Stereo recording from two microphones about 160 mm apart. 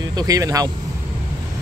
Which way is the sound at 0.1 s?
25° right (ahead or behind).